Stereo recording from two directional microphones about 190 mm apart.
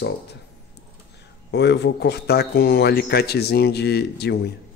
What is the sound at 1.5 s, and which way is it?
Speech, 65° left (ahead or behind).